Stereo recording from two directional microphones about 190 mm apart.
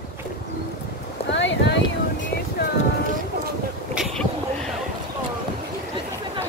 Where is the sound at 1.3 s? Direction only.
70° left (ahead or behind).